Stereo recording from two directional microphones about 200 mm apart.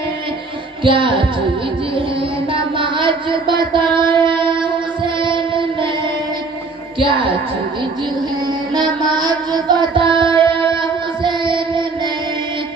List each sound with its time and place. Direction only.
0.8 s music: 25° right (ahead or behind)
2.5 s a sound: 25° right (ahead or behind)
3.7 s child singing: 25° right (ahead or behind)
4.2 s music: 25° right (ahead or behind)
7.0 s music: 25° right (ahead or behind)
8.7 s child singing: 20° right (ahead or behind)
10.8 s music: 25° right (ahead or behind)